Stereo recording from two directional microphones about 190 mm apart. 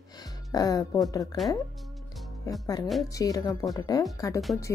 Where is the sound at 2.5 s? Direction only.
20° left (ahead or behind).